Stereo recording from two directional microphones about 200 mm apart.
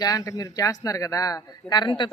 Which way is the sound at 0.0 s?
15° left (ahead or behind).